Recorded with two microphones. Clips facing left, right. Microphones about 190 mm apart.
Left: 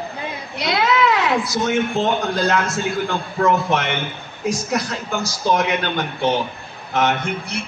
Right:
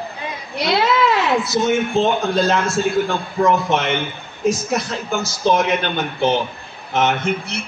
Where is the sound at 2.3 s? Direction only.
25° right (ahead or behind).